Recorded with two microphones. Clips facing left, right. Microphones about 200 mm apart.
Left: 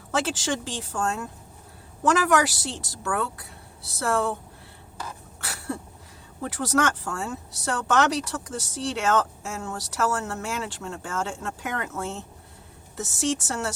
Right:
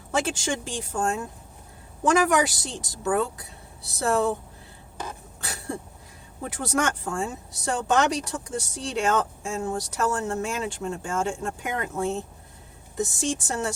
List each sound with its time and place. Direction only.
0.1 s speech: 15° right (ahead or behind)
5.4 s a sound: 20° right (ahead or behind)
6.4 s speech: 15° right (ahead or behind)